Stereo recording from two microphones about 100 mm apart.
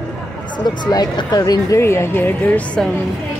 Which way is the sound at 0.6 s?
45° left (ahead or behind).